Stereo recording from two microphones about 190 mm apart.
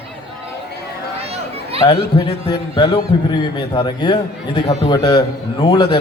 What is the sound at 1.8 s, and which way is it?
A man's voice, 30° left (ahead or behind).